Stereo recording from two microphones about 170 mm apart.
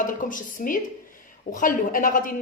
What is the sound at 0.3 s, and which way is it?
Speech, 50° left (ahead or behind).